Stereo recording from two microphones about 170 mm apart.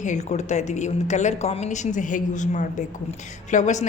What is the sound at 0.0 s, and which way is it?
A woman's voice, 45° left (ahead or behind).